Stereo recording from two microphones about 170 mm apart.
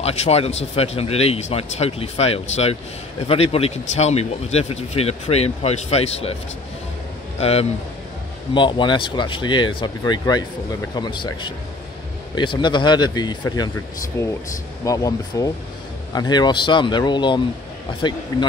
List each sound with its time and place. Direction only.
0.0 s speech: 40° left (ahead or behind)
7.3 s a man's voice: 35° left (ahead or behind)